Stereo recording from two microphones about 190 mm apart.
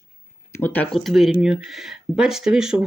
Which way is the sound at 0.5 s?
10° left (ahead or behind).